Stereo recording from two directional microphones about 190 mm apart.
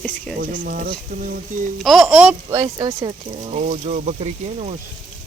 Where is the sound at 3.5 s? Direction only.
35° right (ahead or behind).